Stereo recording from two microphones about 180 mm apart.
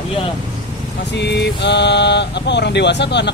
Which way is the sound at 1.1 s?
70° left (ahead or behind).